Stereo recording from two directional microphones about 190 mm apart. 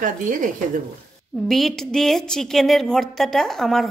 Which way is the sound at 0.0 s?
45° right (ahead or behind).